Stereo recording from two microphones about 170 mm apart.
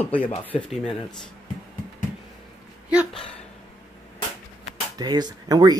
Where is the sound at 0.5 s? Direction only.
40° left (ahead or behind).